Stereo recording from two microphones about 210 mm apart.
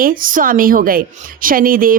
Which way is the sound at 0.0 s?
40° right (ahead or behind).